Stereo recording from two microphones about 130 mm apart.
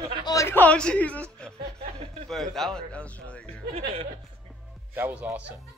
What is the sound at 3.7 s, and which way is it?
Music, 50° right (ahead or behind).